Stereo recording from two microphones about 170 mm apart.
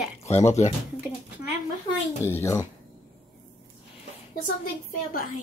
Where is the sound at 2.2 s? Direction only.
15° left (ahead or behind).